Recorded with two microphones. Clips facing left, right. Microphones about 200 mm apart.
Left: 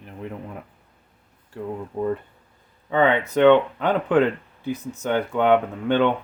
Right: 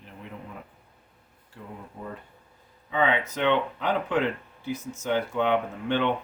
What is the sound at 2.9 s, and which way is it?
Speech, 55° left (ahead or behind).